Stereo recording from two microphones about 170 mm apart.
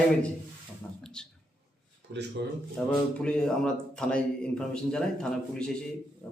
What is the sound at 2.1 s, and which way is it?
Speech, 90° right.